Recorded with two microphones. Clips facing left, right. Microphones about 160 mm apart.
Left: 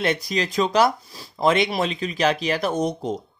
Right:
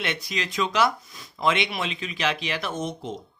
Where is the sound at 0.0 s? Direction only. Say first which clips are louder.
Left 7 dB; 40° left (ahead or behind).